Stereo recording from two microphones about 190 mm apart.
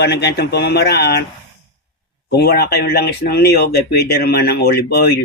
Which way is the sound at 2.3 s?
60° left (ahead or behind).